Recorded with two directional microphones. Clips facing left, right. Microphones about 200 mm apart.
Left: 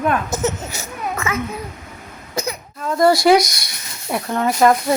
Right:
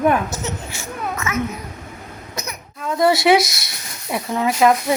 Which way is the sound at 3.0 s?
Centre (ahead or behind).